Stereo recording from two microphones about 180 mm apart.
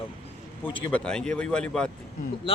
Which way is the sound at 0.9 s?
5° left (ahead or behind).